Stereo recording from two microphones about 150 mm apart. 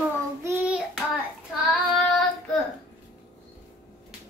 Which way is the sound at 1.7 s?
Centre (ahead or behind).